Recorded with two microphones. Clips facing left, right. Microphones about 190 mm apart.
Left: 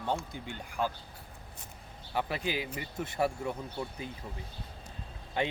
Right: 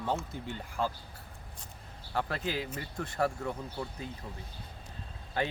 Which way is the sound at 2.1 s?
5° left (ahead or behind).